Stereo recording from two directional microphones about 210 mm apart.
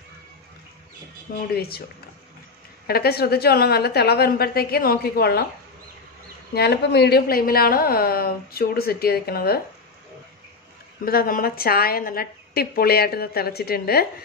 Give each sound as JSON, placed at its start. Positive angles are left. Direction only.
{"t": 1.3, "sound": "a woman's voice", "side_deg": 45}
{"t": 2.9, "sound": "a woman's voice", "side_deg": 50}
{"t": 6.5, "sound": "a woman's voice", "side_deg": 50}
{"t": 11.1, "sound": "a woman's voice", "side_deg": 45}